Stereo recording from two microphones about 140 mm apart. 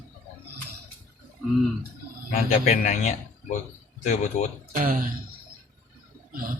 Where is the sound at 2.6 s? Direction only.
60° left (ahead or behind).